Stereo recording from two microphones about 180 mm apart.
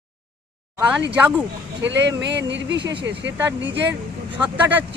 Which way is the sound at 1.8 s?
85° right.